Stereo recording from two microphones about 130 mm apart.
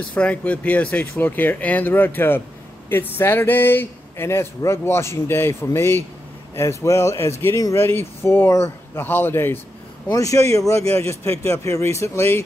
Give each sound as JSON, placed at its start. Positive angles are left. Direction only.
{"t": 0.1, "sound": "speech", "side_deg": 10}